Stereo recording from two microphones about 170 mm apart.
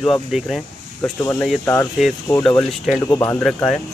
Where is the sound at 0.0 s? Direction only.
Centre (ahead or behind).